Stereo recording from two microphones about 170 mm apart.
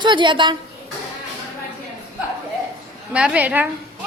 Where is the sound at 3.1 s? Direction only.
5° right (ahead or behind).